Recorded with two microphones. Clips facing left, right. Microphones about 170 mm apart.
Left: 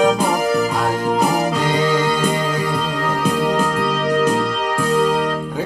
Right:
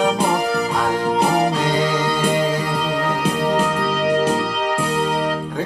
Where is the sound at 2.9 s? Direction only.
30° right (ahead or behind).